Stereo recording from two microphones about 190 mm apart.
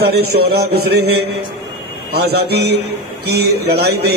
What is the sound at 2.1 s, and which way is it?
A man's voice, 55° right (ahead or behind).